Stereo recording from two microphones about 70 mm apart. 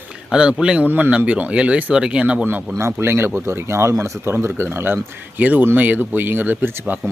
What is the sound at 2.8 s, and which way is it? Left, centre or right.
Speech, right.